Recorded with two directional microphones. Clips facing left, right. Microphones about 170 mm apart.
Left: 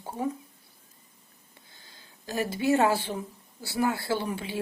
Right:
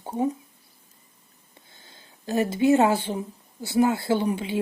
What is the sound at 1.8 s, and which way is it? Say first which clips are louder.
Speech: right 3 dB; 25° right (ahead or behind).